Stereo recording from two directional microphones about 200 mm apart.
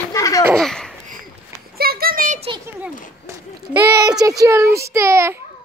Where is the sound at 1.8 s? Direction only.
50° right (ahead or behind).